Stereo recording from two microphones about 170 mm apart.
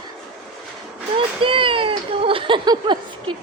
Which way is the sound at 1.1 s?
30° right (ahead or behind).